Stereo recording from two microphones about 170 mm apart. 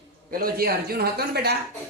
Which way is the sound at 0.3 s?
60° right (ahead or behind).